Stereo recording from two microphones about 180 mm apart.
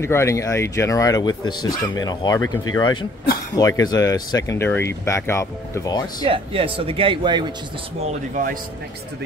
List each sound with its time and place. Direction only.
0.0 s speech: 15° left (ahead or behind)
6.2 s speech: 30° right (ahead or behind)